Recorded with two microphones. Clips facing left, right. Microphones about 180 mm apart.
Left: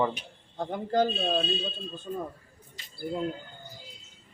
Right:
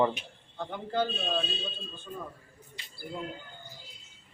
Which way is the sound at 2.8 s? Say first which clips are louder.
Even; 40° left (ahead or behind).